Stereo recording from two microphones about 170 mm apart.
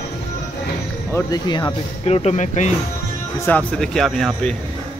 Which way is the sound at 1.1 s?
25° left (ahead or behind).